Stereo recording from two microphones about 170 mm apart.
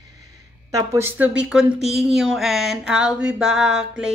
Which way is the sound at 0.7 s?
15° right (ahead or behind).